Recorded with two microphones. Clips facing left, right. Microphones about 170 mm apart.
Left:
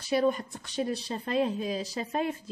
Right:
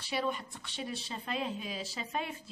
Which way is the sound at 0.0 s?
45° left (ahead or behind).